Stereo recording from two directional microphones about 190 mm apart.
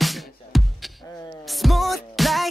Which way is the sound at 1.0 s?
20° left (ahead or behind).